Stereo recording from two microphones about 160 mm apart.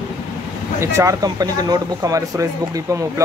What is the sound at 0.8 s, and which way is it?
Speech, 15° right (ahead or behind).